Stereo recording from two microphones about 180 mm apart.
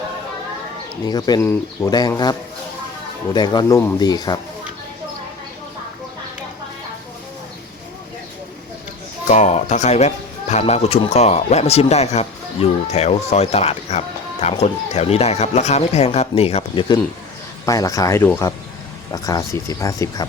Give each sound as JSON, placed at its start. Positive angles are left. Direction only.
{"t": 1.0, "sound": "speech", "side_deg": 25}
{"t": 3.3, "sound": "speech", "side_deg": 25}
{"t": 9.2, "sound": "speech", "side_deg": 40}
{"t": 17.7, "sound": "speech", "side_deg": 20}